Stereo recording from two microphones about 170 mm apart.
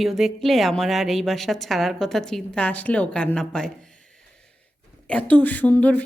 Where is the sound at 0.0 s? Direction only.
Centre (ahead or behind).